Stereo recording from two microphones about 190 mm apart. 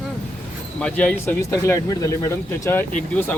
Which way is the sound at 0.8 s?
5° left (ahead or behind).